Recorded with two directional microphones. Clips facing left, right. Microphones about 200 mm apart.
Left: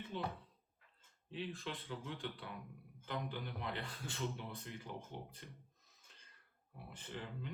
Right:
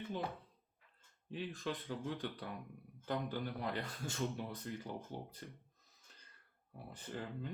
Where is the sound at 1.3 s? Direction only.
45° right (ahead or behind).